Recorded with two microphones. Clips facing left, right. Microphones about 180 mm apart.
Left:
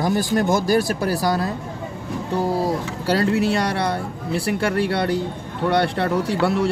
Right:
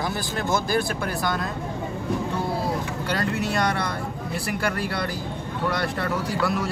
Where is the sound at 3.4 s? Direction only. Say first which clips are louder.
Left 4 dB; 30° left (ahead or behind).